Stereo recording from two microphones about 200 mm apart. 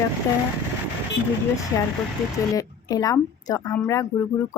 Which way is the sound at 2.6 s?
20° left (ahead or behind).